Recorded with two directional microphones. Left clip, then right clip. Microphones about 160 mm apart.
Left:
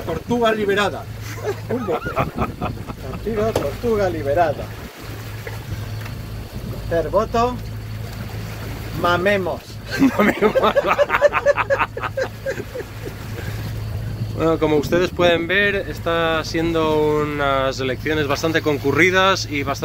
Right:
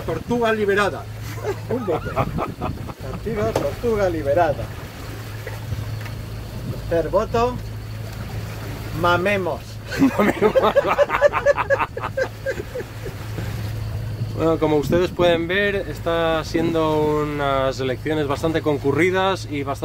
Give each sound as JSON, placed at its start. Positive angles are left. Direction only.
{"t": 0.3, "sound": "speech", "side_deg": 10}
{"t": 1.7, "sound": "speech", "side_deg": -10}
{"t": 3.9, "sound": "speech", "side_deg": -20}
{"t": 6.9, "sound": "speech", "side_deg": -25}
{"t": 9.0, "sound": "speech", "side_deg": -25}
{"t": 14.4, "sound": "speech", "side_deg": -15}